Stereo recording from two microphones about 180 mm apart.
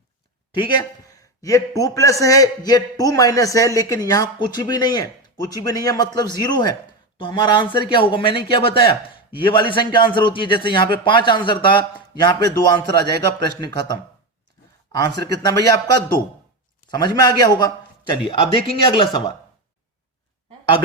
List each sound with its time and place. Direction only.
0.5 s a man's voice: 25° left (ahead or behind)
15.3 s a man's voice: 20° left (ahead or behind)